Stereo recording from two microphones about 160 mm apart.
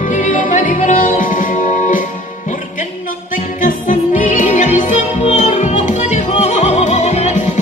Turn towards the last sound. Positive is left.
turn(degrees=45)  # may be behind; listen again after turning